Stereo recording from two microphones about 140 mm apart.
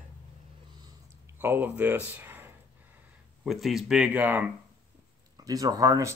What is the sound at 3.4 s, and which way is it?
Speech, centre (ahead or behind).